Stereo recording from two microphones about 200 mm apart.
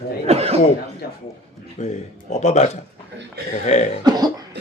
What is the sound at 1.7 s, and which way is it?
Speech, 35° left (ahead or behind).